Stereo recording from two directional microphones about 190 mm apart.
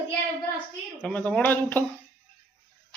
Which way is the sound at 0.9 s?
5° left (ahead or behind).